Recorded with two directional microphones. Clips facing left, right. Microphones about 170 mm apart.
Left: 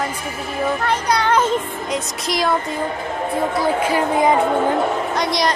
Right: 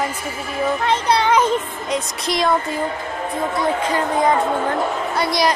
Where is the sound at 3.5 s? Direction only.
5° left (ahead or behind).